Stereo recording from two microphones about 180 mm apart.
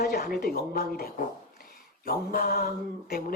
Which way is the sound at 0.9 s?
55° left (ahead or behind).